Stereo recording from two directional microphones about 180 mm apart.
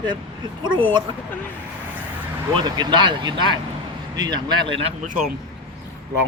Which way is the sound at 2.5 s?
25° right (ahead or behind).